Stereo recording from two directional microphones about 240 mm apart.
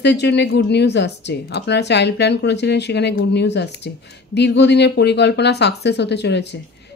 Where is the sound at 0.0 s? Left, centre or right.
Left.